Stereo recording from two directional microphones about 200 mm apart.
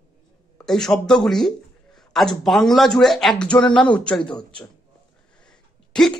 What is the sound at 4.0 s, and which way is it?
Speech, 5° left (ahead or behind).